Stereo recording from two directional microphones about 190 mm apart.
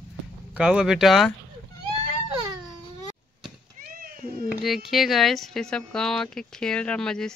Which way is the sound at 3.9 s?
50° right (ahead or behind).